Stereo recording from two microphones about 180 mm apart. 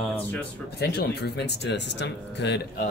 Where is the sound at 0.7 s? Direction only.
65° left (ahead or behind).